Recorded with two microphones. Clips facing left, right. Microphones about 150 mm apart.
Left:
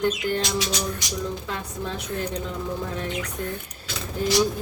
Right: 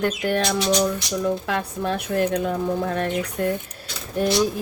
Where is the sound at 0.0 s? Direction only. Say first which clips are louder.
Right 2 dB; 65° right (ahead or behind).